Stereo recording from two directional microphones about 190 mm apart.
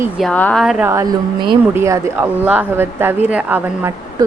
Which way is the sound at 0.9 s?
20° right (ahead or behind).